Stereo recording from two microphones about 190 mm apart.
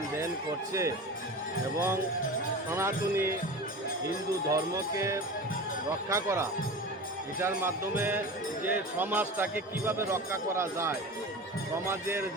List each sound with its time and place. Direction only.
0.7 s speech: 15° right (ahead or behind)
4.4 s speech: 15° right (ahead or behind)
7.4 s speech: 10° right (ahead or behind)